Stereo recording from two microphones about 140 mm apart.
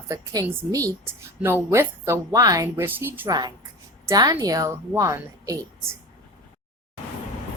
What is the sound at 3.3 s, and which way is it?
A woman's voice, 30° right (ahead or behind).